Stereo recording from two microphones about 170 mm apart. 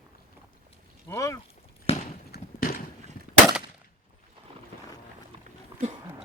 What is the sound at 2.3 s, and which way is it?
Clip-clop, 65° left (ahead or behind).